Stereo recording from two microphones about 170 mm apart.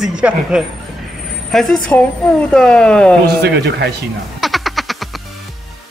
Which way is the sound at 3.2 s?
75° right (ahead or behind).